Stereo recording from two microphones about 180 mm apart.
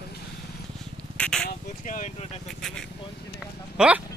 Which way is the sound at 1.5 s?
45° left (ahead or behind).